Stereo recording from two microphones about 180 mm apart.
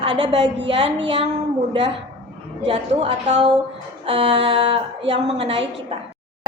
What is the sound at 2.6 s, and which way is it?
A woman's voice, 30° right (ahead or behind).